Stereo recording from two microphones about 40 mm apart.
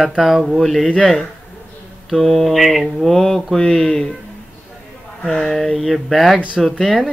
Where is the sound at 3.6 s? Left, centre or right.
Centre.